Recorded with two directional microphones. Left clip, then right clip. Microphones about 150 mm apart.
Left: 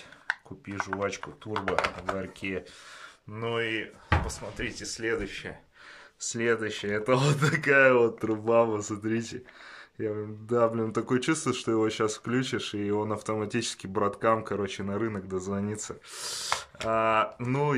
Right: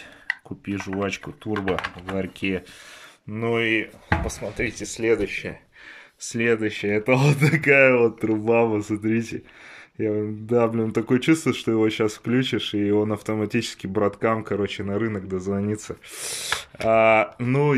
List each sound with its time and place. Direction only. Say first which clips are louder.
0.7 s speech: right 4 dB; 20° right (ahead or behind)